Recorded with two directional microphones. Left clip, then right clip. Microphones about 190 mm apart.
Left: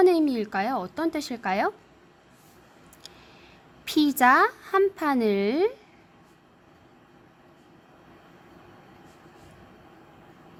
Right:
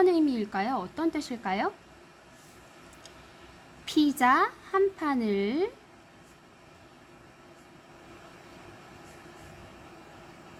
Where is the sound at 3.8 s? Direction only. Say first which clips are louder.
Left 4 dB; 35° left (ahead or behind).